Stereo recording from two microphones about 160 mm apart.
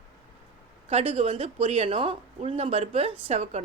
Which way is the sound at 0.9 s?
40° right (ahead or behind).